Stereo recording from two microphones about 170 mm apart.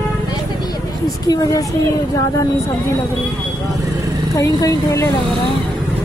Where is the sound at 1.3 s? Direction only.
20° left (ahead or behind).